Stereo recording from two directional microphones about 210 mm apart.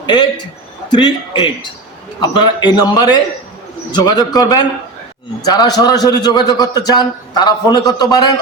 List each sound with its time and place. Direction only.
0.0 s a man's voice: 20° left (ahead or behind)